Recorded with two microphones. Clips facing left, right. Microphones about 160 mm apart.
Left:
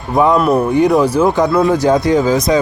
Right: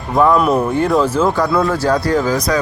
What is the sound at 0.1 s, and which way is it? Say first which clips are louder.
Speech: left 1 dB; 20° left (ahead or behind).